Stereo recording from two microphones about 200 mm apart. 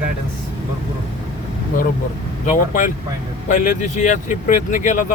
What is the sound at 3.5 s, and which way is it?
Speech, 40° left (ahead or behind).